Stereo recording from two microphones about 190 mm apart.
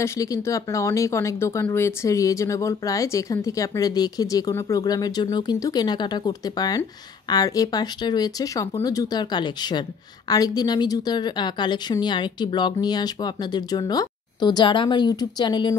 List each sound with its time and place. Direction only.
0.0 s a woman's voice: 15° left (ahead or behind)